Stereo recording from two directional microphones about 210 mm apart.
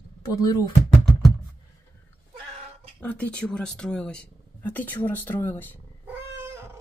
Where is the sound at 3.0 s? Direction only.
5° left (ahead or behind).